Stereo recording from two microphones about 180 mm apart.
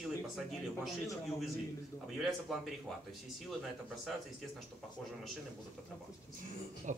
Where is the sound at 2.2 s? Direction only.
Centre (ahead or behind).